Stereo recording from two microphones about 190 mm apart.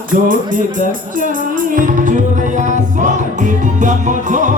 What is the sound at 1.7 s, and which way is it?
Music, 45° right (ahead or behind).